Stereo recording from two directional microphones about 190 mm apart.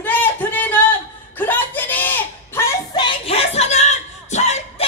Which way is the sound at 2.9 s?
25° left (ahead or behind).